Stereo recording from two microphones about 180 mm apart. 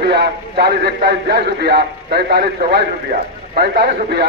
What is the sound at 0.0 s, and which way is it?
A man's voice, 65° right (ahead or behind).